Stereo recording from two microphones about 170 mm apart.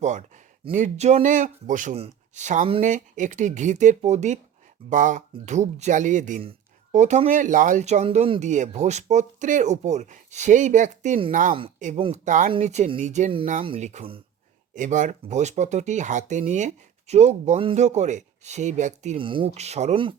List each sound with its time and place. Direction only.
0.0 s speech: 45° right (ahead or behind)
11.9 s speech: 30° right (ahead or behind)
12.2 s speech: 50° right (ahead or behind)
19.1 s speech: 30° right (ahead or behind)